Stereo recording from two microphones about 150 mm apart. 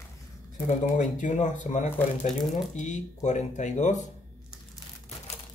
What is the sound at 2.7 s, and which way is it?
Speech, 55° left (ahead or behind).